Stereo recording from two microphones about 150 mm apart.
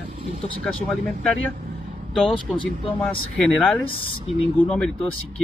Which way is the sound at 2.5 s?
5° right (ahead or behind).